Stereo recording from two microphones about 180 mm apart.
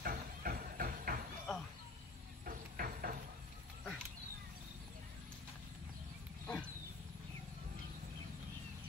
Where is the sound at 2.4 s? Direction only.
55° right (ahead or behind).